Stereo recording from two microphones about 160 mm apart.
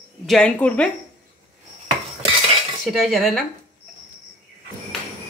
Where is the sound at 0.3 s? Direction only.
5° left (ahead or behind).